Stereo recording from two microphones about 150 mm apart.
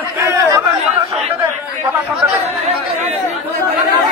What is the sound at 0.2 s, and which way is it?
Chatter, 20° right (ahead or behind).